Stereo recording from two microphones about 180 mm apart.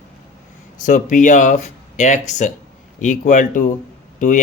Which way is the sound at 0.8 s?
45° left (ahead or behind).